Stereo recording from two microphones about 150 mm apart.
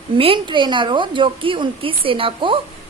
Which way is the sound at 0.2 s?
35° right (ahead or behind).